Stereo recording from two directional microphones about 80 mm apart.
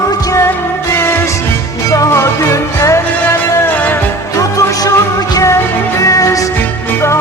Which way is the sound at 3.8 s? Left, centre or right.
Left.